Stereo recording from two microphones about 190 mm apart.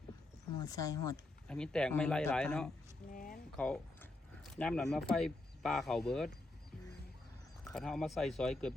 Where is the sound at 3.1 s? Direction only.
45° left (ahead or behind).